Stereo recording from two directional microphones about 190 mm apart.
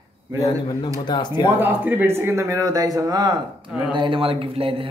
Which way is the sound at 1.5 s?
10° right (ahead or behind).